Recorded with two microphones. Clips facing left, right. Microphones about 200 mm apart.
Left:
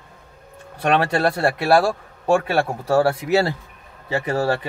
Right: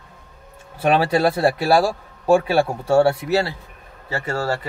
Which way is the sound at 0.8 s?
5° right (ahead or behind).